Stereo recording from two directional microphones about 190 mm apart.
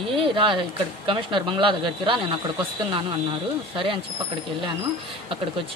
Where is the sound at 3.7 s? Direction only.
25° right (ahead or behind).